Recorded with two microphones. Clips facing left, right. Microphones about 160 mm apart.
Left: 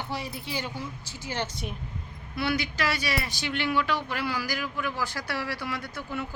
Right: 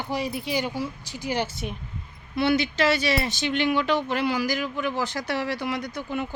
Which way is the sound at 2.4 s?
25° right (ahead or behind).